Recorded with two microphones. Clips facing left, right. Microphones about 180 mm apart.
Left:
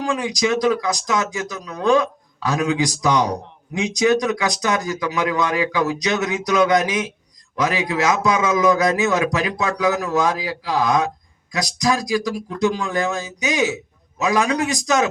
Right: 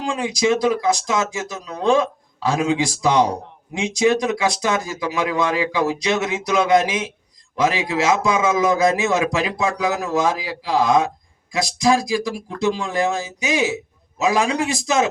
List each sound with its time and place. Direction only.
0.0 s a man's voice: 25° right (ahead or behind)
14.2 s a man's voice: 25° right (ahead or behind)